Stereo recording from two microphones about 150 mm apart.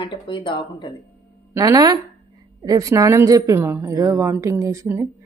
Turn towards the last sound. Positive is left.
turn(degrees=-15)  # may be behind; listen again after turning